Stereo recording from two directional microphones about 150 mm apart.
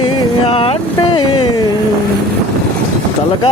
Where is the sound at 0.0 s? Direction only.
35° left (ahead or behind).